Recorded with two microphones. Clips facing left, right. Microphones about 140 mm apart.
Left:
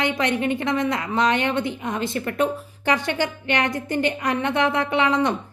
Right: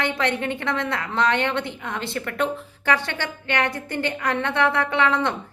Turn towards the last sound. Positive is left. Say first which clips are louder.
# left 1 dB
turn(degrees=15)  # may be behind; listen again after turning